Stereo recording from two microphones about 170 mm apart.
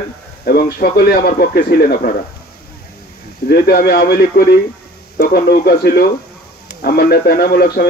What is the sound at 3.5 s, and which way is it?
A man's voice, 65° left (ahead or behind).